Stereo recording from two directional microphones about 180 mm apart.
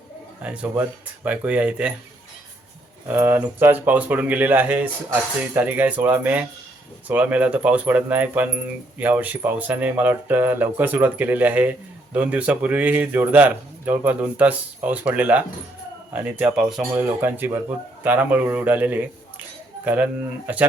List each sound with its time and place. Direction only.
0.4 s speech: 5° right (ahead or behind)
3.1 s speech: 10° right (ahead or behind)